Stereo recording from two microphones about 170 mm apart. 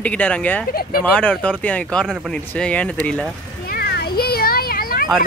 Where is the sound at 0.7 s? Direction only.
65° left (ahead or behind).